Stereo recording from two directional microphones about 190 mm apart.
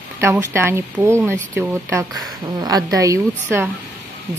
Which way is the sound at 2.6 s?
20° right (ahead or behind).